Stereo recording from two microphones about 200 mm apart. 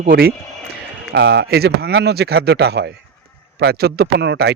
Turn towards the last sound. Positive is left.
turn(degrees=-55)  # may be behind; listen again after turning